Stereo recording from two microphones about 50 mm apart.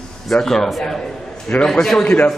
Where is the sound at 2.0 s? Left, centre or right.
Left.